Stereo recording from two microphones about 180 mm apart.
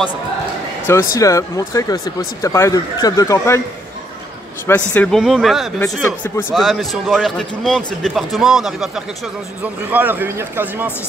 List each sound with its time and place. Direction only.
1.1 s speech: 20° left (ahead or behind)
4.6 s a man's voice: 10° left (ahead or behind); by 10.9 s 10° right (ahead or behind)